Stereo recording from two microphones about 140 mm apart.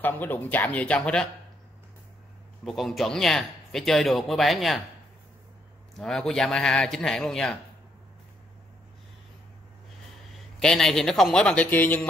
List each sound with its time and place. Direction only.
0.0 s speech: 15° left (ahead or behind)
2.6 s speech: centre (ahead or behind)
5.9 s speech: 5° left (ahead or behind)
10.6 s speech: 5° left (ahead or behind)